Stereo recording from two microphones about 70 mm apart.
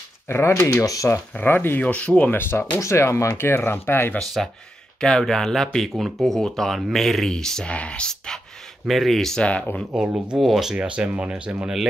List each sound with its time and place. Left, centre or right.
0.3 s speech: left
0.8 s speech: left
1.3 s speech: left
1.8 s speech: centre
2.3 s speech: left
4.2 s speech: centre
8.8 s speech: centre
9.4 s speech: centre
10.1 s speech: centre
11.6 s speech: centre